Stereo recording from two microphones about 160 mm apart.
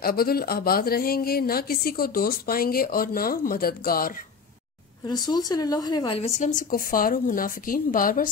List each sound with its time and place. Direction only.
0.0 s speech: 70° left (ahead or behind)
5.0 s speech: 25° left (ahead or behind)
6.1 s speech: 45° left (ahead or behind); by 8.3 s 60° left (ahead or behind)